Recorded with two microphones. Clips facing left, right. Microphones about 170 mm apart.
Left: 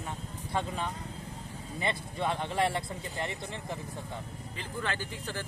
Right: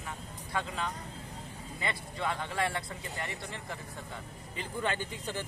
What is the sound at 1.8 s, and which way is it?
Speech, 20° left (ahead or behind).